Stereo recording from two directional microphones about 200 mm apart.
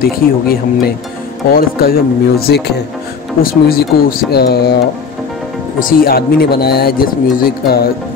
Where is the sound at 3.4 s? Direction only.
50° left (ahead or behind).